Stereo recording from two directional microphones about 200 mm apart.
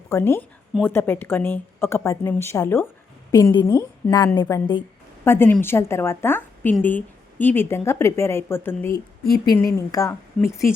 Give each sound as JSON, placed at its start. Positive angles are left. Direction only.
{"t": 0.1, "sound": "a woman's voice", "side_deg": 10}